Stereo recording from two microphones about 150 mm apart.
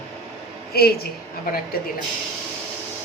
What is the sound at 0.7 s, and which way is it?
Speech, 90° left.